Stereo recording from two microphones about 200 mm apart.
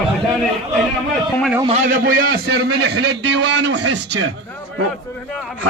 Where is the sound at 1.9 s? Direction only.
50° right (ahead or behind).